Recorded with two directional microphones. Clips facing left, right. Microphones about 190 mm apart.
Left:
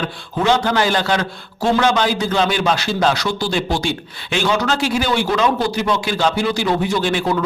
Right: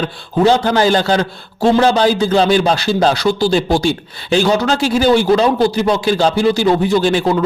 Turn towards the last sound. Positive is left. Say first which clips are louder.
# right 5 dB
turn(degrees=-35)  # may be behind; listen again after turning